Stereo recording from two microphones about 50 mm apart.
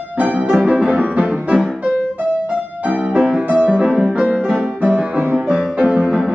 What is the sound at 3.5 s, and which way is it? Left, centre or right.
Music, right.